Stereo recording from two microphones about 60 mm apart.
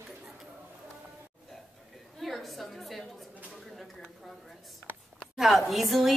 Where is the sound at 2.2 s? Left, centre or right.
Centre.